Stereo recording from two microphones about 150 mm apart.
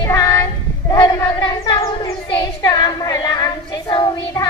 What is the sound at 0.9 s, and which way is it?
Child singing, 30° left (ahead or behind).